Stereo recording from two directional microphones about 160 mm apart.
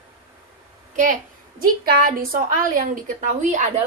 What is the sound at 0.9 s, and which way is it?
A woman's voice, 55° right (ahead or behind).